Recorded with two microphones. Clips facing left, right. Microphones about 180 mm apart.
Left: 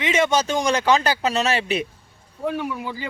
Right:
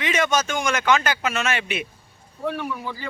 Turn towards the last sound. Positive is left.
turn(degrees=15)  # may be behind; listen again after turning